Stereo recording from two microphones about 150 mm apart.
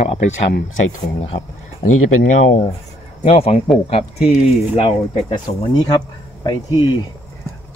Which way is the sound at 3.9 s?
40° left (ahead or behind).